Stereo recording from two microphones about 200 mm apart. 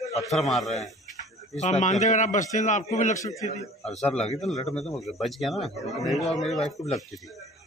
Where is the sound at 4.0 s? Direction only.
5° left (ahead or behind).